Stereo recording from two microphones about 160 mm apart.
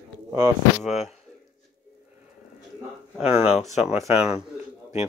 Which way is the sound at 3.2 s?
5° right (ahead or behind).